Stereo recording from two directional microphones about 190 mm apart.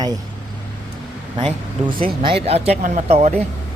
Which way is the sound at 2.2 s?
30° right (ahead or behind).